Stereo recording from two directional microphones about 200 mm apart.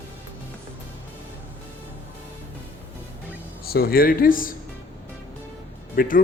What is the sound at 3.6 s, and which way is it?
Speech, 50° left (ahead or behind).